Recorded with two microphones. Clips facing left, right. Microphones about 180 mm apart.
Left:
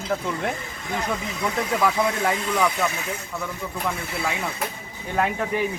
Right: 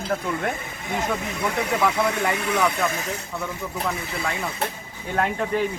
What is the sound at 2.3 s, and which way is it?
Speech, 65° right (ahead or behind).